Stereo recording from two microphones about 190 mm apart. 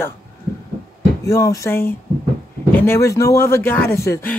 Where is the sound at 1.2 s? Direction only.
15° left (ahead or behind).